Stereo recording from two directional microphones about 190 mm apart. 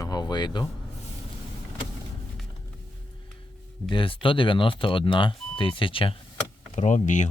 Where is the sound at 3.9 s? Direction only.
25° left (ahead or behind).